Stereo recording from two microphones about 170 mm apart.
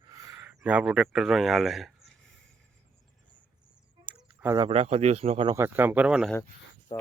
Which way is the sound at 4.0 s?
5° right (ahead or behind).